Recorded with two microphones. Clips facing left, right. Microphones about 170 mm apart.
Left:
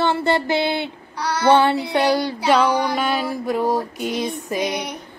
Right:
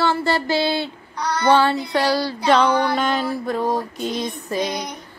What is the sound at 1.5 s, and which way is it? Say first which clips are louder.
Speech: left 1 dB; 20° left (ahead or behind).